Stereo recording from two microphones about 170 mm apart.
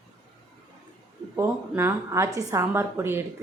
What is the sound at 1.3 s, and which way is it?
A woman's voice, 15° right (ahead or behind).